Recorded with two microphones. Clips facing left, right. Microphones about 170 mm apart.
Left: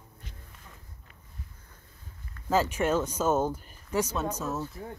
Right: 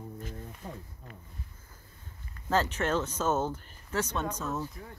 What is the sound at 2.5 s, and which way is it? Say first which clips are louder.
Speech: left 3 dB; 10° left (ahead or behind).